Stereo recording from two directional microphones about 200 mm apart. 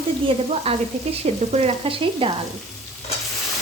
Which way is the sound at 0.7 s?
30° right (ahead or behind).